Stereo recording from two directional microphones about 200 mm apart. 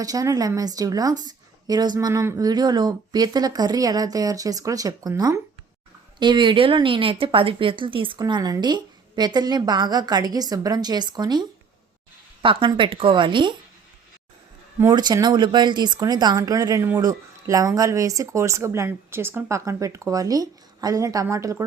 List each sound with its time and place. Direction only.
0.0 s speech: 20° right (ahead or behind)
14.8 s speech: 15° right (ahead or behind)